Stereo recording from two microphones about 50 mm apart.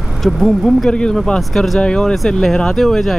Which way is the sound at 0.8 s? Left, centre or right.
Centre.